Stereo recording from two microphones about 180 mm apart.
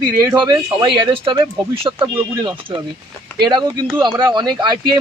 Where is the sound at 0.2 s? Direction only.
20° right (ahead or behind).